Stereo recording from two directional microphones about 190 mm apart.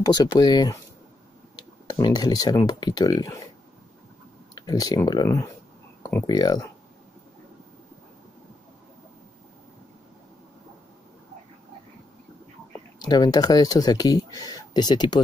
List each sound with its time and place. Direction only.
0.0 s speech: 20° left (ahead or behind)
1.9 s speech: 20° left (ahead or behind)
4.6 s speech: 20° left (ahead or behind)
13.0 s speech: 20° left (ahead or behind)